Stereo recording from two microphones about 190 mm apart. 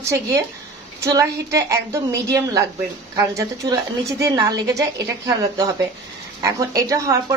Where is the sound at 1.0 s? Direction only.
15° right (ahead or behind).